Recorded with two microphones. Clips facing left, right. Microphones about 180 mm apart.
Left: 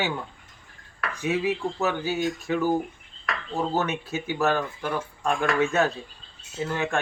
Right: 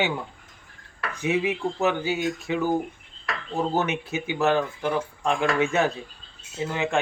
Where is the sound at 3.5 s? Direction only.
15° right (ahead or behind).